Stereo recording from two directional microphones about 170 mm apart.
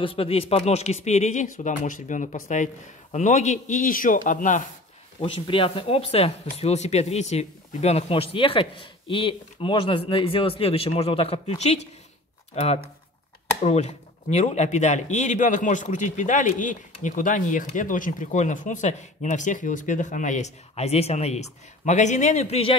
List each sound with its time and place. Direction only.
0.0 s speech: 35° left (ahead or behind); by 4.6 s 50° left (ahead or behind)
5.2 s speech: 30° left (ahead or behind)